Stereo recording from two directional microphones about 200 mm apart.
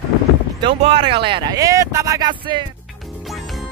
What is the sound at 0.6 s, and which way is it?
Speech, 25° right (ahead or behind).